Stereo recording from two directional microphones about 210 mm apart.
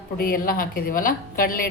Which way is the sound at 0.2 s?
45° left (ahead or behind).